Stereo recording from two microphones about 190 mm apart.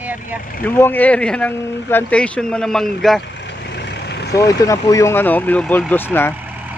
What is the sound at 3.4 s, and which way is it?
Vehicle, 65° left (ahead or behind).